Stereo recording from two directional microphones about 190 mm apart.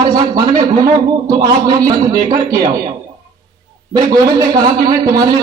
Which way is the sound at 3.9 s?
20° right (ahead or behind).